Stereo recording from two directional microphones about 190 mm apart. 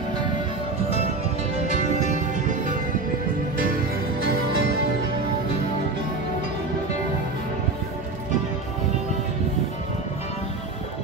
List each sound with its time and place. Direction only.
4.3 s music: 60° right (ahead or behind)